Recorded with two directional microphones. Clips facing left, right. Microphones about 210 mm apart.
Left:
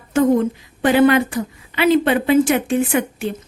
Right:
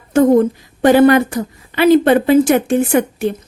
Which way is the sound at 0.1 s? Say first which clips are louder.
Right 5 dB; 45° right (ahead or behind).